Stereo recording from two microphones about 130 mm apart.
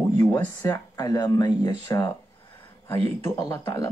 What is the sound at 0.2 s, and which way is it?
Speech, 25° left (ahead or behind).